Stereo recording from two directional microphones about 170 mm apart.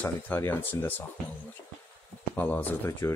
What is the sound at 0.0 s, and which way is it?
Speech, 15° left (ahead or behind).